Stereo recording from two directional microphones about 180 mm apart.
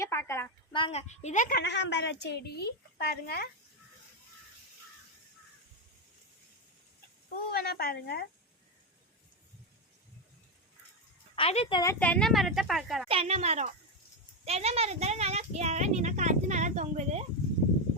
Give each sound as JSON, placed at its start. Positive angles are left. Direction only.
{"t": 0.0, "sound": "a woman's voice", "side_deg": 15}
{"t": 0.7, "sound": "a woman's voice", "side_deg": 30}
{"t": 1.6, "sound": "a woman's voice", "side_deg": 75}
{"t": 7.5, "sound": "a woman's voice", "side_deg": 60}
{"t": 11.3, "sound": "a woman's voice", "side_deg": 35}
{"t": 11.9, "sound": "a woman's voice", "side_deg": 5}
{"t": 13.1, "sound": "speech", "side_deg": -35}